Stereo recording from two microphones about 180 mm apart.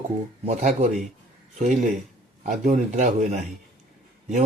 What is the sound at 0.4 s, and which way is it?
Speech, 35° right (ahead or behind).